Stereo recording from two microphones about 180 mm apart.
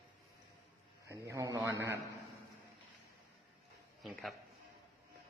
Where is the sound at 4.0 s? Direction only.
Centre (ahead or behind).